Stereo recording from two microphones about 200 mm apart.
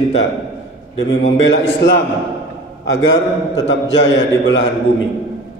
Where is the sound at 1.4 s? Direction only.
70° left (ahead or behind).